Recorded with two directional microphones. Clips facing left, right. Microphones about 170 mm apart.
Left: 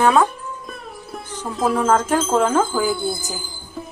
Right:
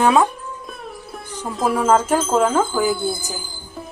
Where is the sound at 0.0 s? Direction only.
15° right (ahead or behind).